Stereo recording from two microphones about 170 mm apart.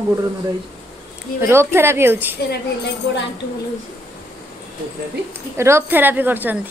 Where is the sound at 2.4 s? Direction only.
85° left.